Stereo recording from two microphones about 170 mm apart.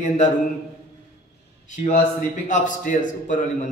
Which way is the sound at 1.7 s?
45° left (ahead or behind).